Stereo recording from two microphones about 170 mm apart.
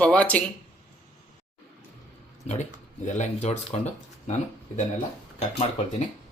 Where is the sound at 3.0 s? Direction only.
45° left (ahead or behind).